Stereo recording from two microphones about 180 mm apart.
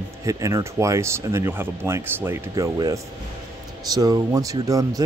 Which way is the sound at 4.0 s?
20° right (ahead or behind).